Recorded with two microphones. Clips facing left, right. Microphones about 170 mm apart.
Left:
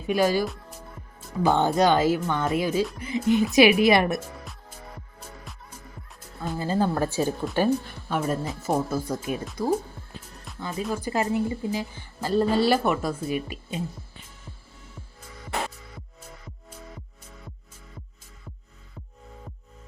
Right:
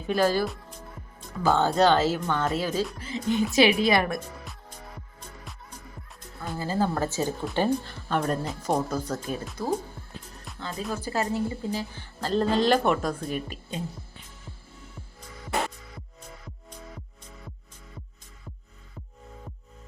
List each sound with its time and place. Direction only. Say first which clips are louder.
0.1 s speech: left 1 dB; 10° left (ahead or behind)
6.6 s speech: left 2 dB; 15° left (ahead or behind)